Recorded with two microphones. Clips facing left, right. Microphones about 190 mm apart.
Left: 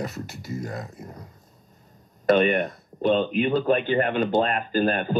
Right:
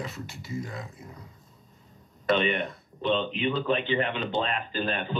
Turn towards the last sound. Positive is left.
turn(degrees=45)  # may be behind; listen again after turning